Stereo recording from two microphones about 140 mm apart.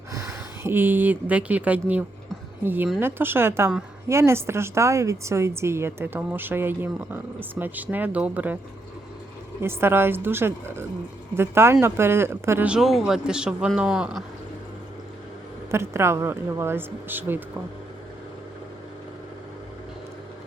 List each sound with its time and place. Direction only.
0.1 s a woman's voice: 20° right (ahead or behind)
9.6 s a woman's voice: 15° right (ahead or behind)
15.7 s a woman's voice: 20° right (ahead or behind)